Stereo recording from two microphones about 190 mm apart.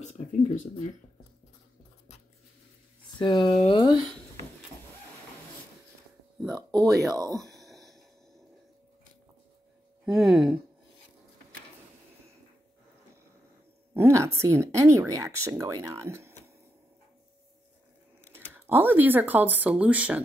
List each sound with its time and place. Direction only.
0.0 s speech: 40° left (ahead or behind)
3.2 s speech: 25° left (ahead or behind)
6.5 s speech: 20° right (ahead or behind)
7.5 s a sound: centre (ahead or behind)
10.0 s speech: centre (ahead or behind)
13.9 s speech: 15° right (ahead or behind)
18.3 s speech: 10° right (ahead or behind)